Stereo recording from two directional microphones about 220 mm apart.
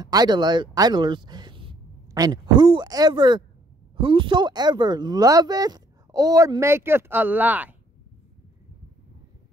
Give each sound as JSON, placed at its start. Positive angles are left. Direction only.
{"t": 0.0, "sound": "speech", "side_deg": -20}